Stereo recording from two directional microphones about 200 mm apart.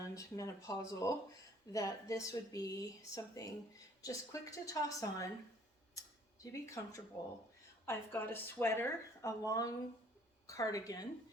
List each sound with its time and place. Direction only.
0.1 s speech: 15° left (ahead or behind)
5.9 s a sound: 15° left (ahead or behind)
7.9 s a woman's voice: 10° left (ahead or behind)